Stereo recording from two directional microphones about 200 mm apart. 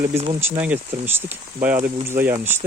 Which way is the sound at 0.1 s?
30° right (ahead or behind).